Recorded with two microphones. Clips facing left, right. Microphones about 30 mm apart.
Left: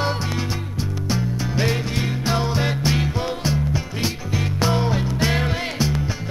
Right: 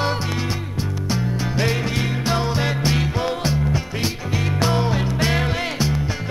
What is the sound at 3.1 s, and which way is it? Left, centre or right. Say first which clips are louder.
Music: right 2 dB; centre.